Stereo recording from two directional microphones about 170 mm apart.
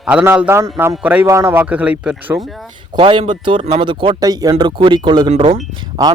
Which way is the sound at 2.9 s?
30° right (ahead or behind).